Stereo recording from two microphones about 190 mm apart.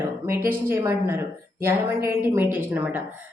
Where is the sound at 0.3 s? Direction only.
10° right (ahead or behind).